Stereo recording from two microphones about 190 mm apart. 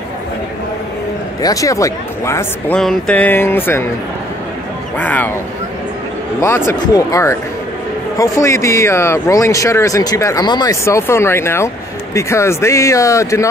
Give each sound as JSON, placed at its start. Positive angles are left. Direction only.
{"t": 1.4, "sound": "speech", "side_deg": 20}
{"t": 2.8, "sound": "speech", "side_deg": 5}
{"t": 4.9, "sound": "speech", "side_deg": 10}
{"t": 6.4, "sound": "speech", "side_deg": 15}